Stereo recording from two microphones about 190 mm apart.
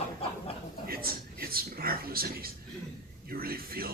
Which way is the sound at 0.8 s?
50° right (ahead or behind).